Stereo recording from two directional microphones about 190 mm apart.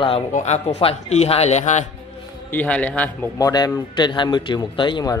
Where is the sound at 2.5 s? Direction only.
5° left (ahead or behind).